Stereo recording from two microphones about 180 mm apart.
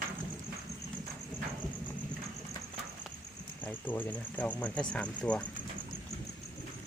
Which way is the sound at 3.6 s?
10° left (ahead or behind).